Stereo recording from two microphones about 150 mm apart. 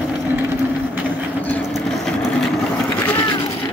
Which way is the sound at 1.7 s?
Centre (ahead or behind).